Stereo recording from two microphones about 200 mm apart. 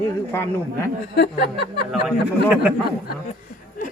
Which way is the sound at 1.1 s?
55° left (ahead or behind).